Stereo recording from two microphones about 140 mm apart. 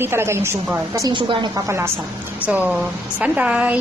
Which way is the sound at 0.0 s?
15° right (ahead or behind).